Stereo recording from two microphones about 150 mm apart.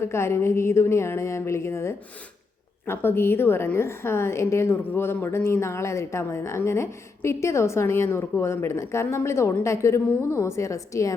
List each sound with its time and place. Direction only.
0.0 s a woman's voice: 15° left (ahead or behind)